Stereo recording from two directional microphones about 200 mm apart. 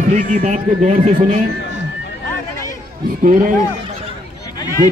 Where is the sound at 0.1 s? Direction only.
40° right (ahead or behind).